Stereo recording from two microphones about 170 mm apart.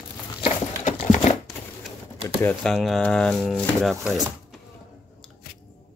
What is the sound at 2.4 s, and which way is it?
Speech, centre (ahead or behind).